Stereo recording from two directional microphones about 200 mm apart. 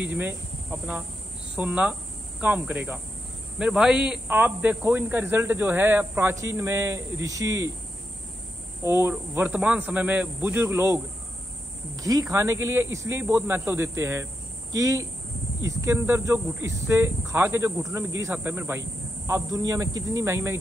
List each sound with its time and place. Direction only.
0.0 s speech: 10° right (ahead or behind)
8.8 s speech: 10° right (ahead or behind)
12.0 s speech: 15° right (ahead or behind)